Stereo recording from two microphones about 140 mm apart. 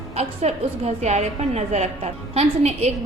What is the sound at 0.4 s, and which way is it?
A woman's voice, 50° right (ahead or behind).